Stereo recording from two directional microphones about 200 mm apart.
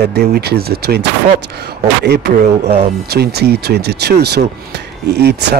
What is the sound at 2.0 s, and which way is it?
Speech, 55° right (ahead or behind).